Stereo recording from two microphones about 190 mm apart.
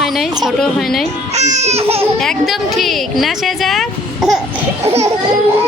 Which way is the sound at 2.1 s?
5° left (ahead or behind).